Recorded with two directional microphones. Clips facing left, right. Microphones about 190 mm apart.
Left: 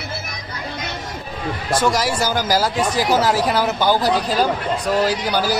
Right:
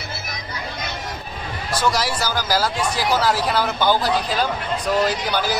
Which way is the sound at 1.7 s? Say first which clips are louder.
Left 3 dB; 50° left (ahead or behind).